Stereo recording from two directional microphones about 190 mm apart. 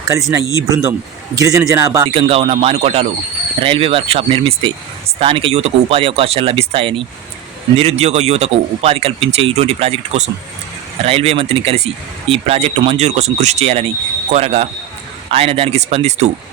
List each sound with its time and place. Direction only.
0.1 s a man's voice: 15° right (ahead or behind)
2.0 s speech: 30° right (ahead or behind)